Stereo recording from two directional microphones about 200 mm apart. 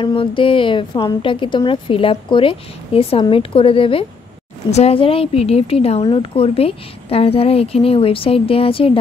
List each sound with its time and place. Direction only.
0.0 s a woman's voice: 25° left (ahead or behind)